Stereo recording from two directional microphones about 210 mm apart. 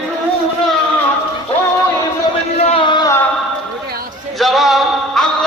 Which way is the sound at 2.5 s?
30° left (ahead or behind).